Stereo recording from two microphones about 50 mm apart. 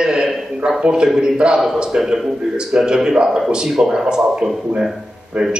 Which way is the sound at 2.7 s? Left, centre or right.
Centre.